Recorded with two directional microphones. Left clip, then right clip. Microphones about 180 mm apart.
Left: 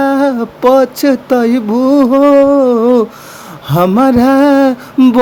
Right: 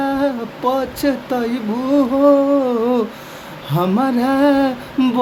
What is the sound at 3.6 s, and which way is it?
Music, 45° left (ahead or behind).